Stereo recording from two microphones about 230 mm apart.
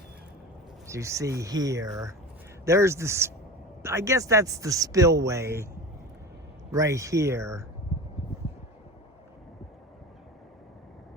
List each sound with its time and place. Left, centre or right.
0.9 s speech: centre
6.7 s speech: centre